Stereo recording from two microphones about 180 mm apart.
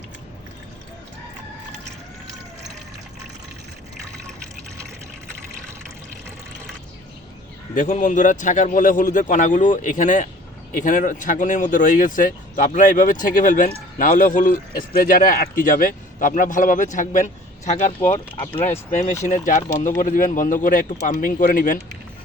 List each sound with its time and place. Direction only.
7.8 s speech: 45° left (ahead or behind)
18.6 s speech: 10° left (ahead or behind)
19.2 s speech: 45° left (ahead or behind)